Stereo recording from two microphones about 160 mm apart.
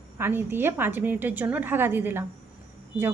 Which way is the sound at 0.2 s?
15° right (ahead or behind).